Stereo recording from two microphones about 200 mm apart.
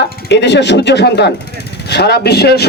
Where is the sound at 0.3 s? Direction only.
60° left (ahead or behind).